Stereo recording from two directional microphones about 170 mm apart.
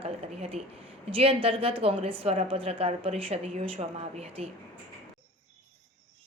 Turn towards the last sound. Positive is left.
turn(degrees=-35)  # may be behind; listen again after turning